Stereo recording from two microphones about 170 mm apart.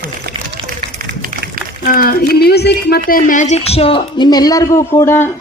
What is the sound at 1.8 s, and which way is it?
A woman's voice, 60° left (ahead or behind).